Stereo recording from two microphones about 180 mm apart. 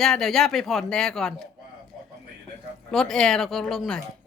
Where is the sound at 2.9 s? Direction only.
Centre (ahead or behind).